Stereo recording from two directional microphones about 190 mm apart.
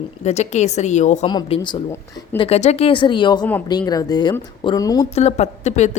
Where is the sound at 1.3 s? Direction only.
25° left (ahead or behind).